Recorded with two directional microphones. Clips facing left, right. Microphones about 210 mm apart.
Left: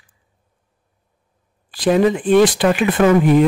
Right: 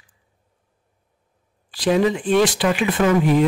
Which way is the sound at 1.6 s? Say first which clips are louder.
Left 3 dB; 50° left (ahead or behind).